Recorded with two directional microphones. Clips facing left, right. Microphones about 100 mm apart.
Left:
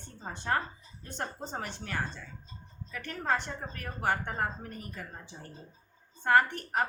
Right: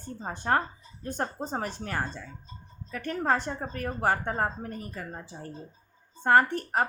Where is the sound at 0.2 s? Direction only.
40° right (ahead or behind).